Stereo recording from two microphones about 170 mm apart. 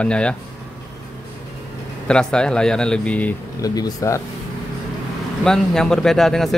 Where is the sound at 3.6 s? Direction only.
20° left (ahead or behind).